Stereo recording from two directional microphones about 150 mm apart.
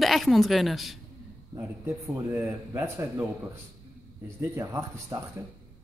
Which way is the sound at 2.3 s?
15° right (ahead or behind).